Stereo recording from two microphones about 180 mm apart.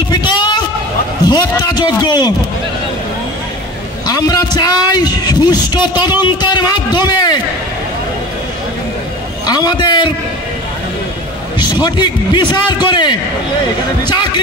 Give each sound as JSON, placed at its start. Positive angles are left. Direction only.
{"t": 0.1, "sound": "a sound", "side_deg": 25}
{"t": 1.2, "sound": "a man's voice", "side_deg": 25}
{"t": 4.1, "sound": "a man's voice", "side_deg": 20}
{"t": 9.5, "sound": "a man's voice", "side_deg": 25}
{"t": 11.5, "sound": "a man's voice", "side_deg": 25}